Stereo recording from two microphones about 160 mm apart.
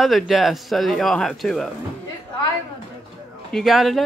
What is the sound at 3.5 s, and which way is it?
Speech, centre (ahead or behind).